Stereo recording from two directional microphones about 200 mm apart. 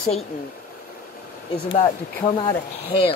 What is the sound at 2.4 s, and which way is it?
Speech, 25° left (ahead or behind).